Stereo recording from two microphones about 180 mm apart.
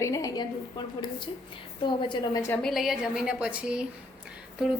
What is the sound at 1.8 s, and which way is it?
Speech, 25° left (ahead or behind).